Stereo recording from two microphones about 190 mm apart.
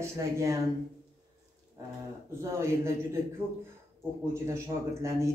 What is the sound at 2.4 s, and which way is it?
Speech, 15° right (ahead or behind).